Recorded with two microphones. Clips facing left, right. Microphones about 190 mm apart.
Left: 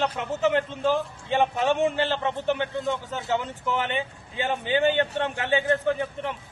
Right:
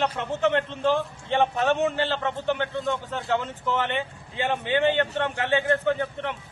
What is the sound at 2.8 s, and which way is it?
A man's voice, centre (ahead or behind).